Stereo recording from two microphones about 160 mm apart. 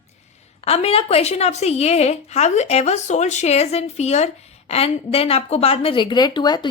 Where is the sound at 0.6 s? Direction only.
40° left (ahead or behind).